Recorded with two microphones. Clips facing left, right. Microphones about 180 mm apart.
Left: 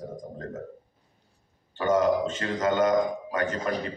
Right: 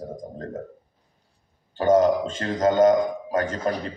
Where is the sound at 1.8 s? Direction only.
30° right (ahead or behind).